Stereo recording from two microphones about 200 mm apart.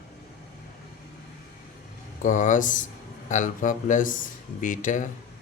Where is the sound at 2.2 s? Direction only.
40° left (ahead or behind).